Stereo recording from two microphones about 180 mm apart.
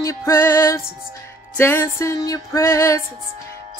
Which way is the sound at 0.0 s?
15° left (ahead or behind).